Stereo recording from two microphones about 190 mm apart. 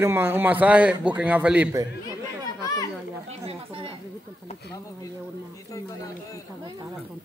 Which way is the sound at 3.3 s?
30° right (ahead or behind).